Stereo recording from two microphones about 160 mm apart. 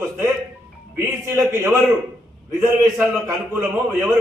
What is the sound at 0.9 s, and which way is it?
A man's voice, 15° right (ahead or behind).